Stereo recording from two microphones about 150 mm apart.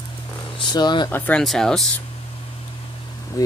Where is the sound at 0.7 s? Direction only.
30° left (ahead or behind).